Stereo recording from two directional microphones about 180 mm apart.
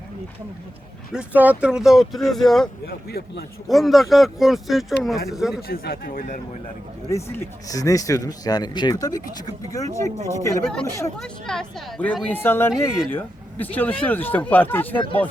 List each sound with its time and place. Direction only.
1.1 s speech: 10° right (ahead or behind)
3.1 s a man's voice: 60° left (ahead or behind)
3.7 s speech: centre (ahead or behind)
5.6 s speech: 55° left (ahead or behind)
7.1 s speech: 15° left (ahead or behind)
11.2 s speech: 5° left (ahead or behind)